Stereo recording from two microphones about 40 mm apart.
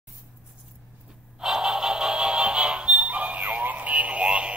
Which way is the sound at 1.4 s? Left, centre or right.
Centre.